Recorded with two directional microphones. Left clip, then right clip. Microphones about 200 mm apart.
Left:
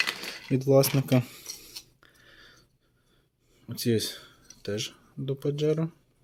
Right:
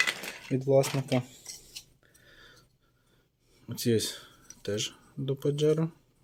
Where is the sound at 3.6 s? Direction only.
5° left (ahead or behind).